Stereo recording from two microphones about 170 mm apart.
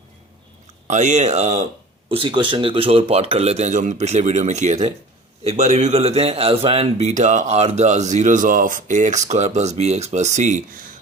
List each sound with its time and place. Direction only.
0.9 s a man's voice: 45° right (ahead or behind)
2.0 s a man's voice: 30° right (ahead or behind)